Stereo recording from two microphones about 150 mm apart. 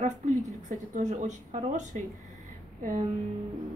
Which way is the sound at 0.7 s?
55° right (ahead or behind).